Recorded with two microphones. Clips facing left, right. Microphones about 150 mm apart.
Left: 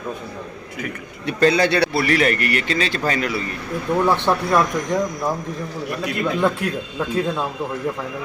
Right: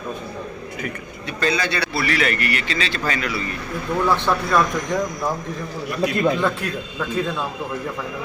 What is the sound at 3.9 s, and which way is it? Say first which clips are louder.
Speech: left 2 dB; 20° left (ahead or behind).